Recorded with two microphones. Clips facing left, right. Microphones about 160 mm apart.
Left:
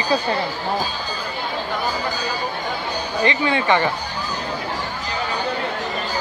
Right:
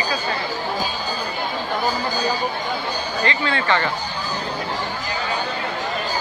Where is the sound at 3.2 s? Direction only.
15° left (ahead or behind).